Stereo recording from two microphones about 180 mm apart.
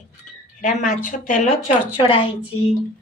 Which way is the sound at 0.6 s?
45° left (ahead or behind).